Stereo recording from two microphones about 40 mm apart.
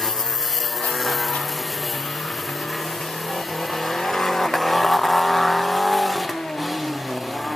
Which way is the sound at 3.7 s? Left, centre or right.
Centre.